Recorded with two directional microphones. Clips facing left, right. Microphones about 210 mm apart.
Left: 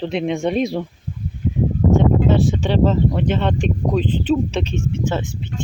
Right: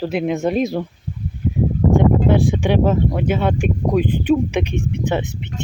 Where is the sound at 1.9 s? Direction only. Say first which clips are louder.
Right 1 dB; 15° right (ahead or behind).